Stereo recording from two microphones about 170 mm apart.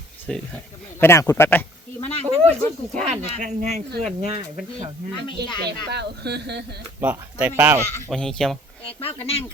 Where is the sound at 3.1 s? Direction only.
40° right (ahead or behind).